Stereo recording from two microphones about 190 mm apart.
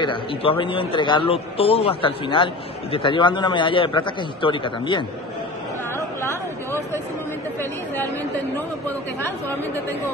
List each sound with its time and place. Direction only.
0.0 s a man's voice: 25° left (ahead or behind)
6.2 s a sound: 15° left (ahead or behind)
8.8 s speech: 10° left (ahead or behind)